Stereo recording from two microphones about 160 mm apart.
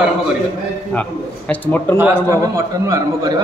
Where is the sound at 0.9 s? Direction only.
10° left (ahead or behind).